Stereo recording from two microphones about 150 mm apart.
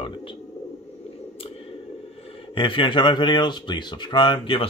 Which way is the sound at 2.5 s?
35° left (ahead or behind).